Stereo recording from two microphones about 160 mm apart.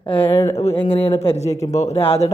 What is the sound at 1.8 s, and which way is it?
Speech, 35° left (ahead or behind).